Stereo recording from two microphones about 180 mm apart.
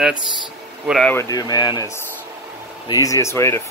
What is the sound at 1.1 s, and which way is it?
Speech, 20° left (ahead or behind).